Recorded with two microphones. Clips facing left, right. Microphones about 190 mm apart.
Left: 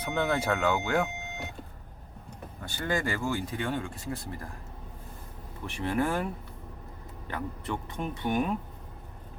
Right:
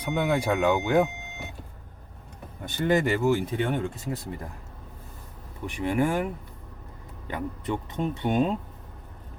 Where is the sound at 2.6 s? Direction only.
20° right (ahead or behind).